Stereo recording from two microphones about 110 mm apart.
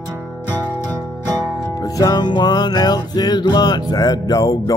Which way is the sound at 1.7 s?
35° left (ahead or behind).